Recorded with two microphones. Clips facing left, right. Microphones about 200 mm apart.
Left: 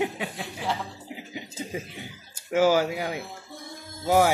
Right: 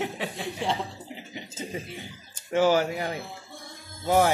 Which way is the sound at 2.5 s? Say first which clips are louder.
Left 1 dB; 10° left (ahead or behind).